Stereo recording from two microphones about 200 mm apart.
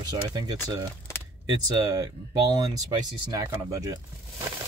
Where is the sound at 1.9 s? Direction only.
20° right (ahead or behind).